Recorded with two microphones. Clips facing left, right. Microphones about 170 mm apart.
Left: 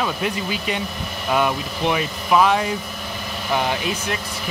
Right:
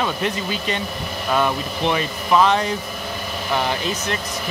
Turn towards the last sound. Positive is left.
turn(degrees=10)  # may be behind; listen again after turning